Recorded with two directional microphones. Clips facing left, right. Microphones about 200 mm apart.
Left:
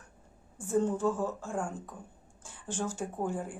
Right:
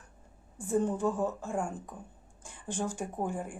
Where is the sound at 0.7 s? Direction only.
15° right (ahead or behind).